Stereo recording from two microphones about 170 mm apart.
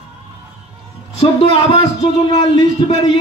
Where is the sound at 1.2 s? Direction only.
35° left (ahead or behind).